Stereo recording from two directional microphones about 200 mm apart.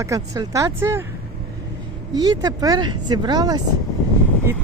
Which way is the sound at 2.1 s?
20° right (ahead or behind).